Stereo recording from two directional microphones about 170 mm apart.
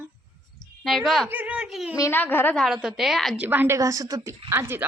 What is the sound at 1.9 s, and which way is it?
Speech, 15° left (ahead or behind).